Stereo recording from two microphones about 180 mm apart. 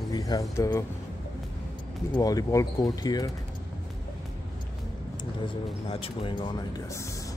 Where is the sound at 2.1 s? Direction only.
20° left (ahead or behind).